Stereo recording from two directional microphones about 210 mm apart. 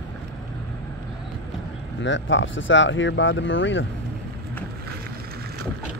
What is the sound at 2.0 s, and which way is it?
Speech, 60° left (ahead or behind).